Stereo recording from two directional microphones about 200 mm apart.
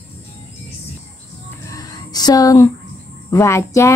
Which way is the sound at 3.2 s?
15° left (ahead or behind).